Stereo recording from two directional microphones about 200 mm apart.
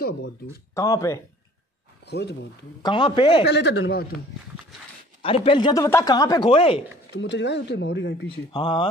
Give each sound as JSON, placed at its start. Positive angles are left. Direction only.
{"t": 0.7, "sound": "speech", "side_deg": 15}
{"t": 2.0, "sound": "speech", "side_deg": 55}
{"t": 2.8, "sound": "speech", "side_deg": 25}
{"t": 3.4, "sound": "speech", "side_deg": 60}
{"t": 5.2, "sound": "speech", "side_deg": 30}
{"t": 7.2, "sound": "speech", "side_deg": 60}
{"t": 8.5, "sound": "speech", "side_deg": 25}